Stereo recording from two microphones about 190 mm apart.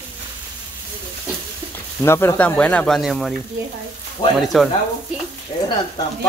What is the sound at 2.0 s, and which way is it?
Speech, 10° left (ahead or behind).